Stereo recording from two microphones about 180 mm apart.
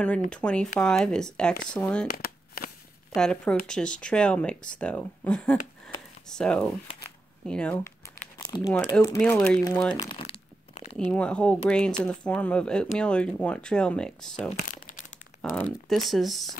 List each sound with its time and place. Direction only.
0.3 s speech: 5° left (ahead or behind)
2.0 s a sound: 60° left (ahead or behind)
3.2 s speech: 5° left (ahead or behind)
7.4 s a sound: 5° left (ahead or behind)
8.4 s speech: 20° left (ahead or behind)
9.9 s speech: 20° left (ahead or behind)
11.1 s speech: 5° left (ahead or behind)
14.7 s crumpling: 50° left (ahead or behind)
15.5 s speech: 5° left (ahead or behind)